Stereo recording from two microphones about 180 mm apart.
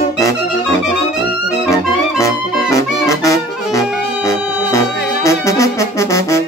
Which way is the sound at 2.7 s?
15° left (ahead or behind).